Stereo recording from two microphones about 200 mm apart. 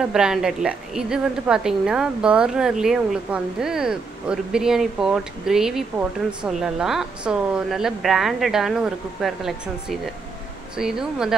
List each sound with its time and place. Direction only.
0.0 s a woman's voice: 5° right (ahead or behind)